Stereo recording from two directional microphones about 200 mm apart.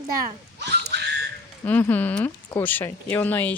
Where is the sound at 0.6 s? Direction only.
55° right (ahead or behind).